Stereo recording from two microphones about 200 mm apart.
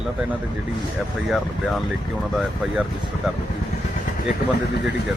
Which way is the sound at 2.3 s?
Centre (ahead or behind).